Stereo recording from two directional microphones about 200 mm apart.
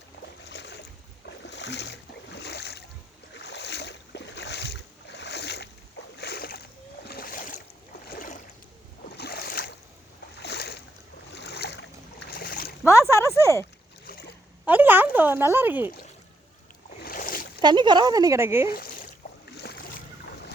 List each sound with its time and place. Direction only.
0.4 s boat: 60° left (ahead or behind); by 8.4 s 45° left (ahead or behind)
9.1 s boat: 55° left (ahead or behind)
12.8 s a sound: 15° left (ahead or behind)
14.1 s boat: 50° left (ahead or behind)
14.7 s speech: 10° right (ahead or behind)
17.0 s boat: 45° left (ahead or behind)
17.6 s speech: 20° right (ahead or behind)
18.7 s a sound: 45° left (ahead or behind)
19.6 s boat: 55° left (ahead or behind)